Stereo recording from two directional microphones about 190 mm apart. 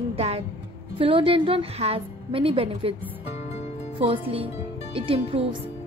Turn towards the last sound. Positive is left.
turn(degrees=-30)  # may be behind; listen again after turning